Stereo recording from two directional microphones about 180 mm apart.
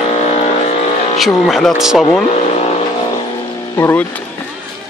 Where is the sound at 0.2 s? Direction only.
40° left (ahead or behind).